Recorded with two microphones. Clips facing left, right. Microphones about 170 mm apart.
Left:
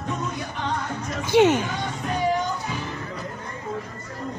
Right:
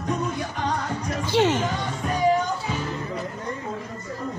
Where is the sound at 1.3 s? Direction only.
15° left (ahead or behind).